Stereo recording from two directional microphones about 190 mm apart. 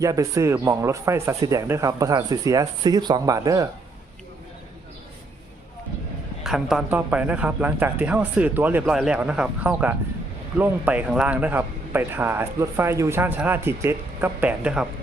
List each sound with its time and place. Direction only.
0.0 s speech: 15° right (ahead or behind)
6.4 s speech: centre (ahead or behind)